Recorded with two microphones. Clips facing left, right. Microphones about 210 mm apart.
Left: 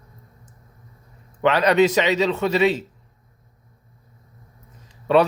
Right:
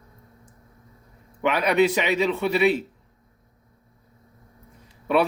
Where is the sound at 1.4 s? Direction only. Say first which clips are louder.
Left 3 dB; 80° left.